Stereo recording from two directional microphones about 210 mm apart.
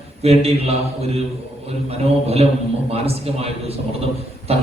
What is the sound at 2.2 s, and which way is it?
Speech, 30° right (ahead or behind).